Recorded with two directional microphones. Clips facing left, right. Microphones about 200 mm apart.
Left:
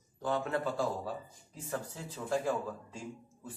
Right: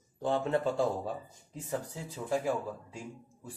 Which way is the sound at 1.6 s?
15° right (ahead or behind).